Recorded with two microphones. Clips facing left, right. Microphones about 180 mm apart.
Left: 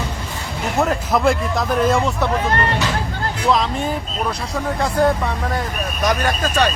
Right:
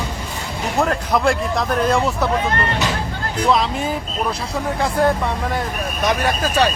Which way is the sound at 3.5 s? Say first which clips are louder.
Even; centre (ahead or behind).